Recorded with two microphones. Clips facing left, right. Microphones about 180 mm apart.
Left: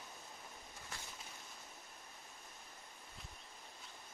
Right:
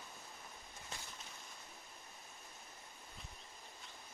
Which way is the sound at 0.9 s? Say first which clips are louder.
Right 1 dB; 20° right (ahead or behind).